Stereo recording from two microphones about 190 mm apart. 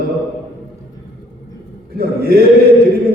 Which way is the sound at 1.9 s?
55° right (ahead or behind).